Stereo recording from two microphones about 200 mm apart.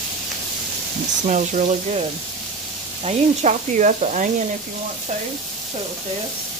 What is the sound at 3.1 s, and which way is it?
Speech, 35° right (ahead or behind).